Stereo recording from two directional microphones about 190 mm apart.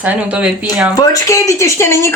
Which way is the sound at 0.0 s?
5° right (ahead or behind).